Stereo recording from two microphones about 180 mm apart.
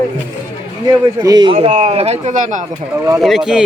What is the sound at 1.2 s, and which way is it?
Speech, 25° right (ahead or behind).